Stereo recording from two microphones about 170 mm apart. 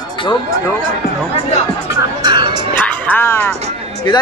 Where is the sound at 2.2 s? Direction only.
25° right (ahead or behind).